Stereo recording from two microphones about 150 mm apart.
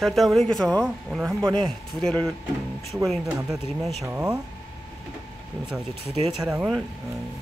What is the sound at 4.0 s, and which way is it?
Speech, 20° right (ahead or behind).